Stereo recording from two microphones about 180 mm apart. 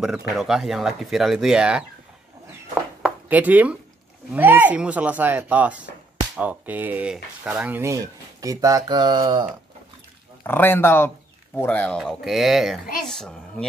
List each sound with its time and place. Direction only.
0.4 s speech: centre (ahead or behind)
3.0 s a sound: 10° right (ahead or behind)
4.3 s speech: 10° right (ahead or behind); by 9.5 s 25° right (ahead or behind)
10.4 s speech: 10° left (ahead or behind)